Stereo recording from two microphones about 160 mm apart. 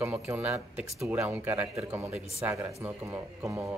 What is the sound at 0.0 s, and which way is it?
Speech, 15° right (ahead or behind).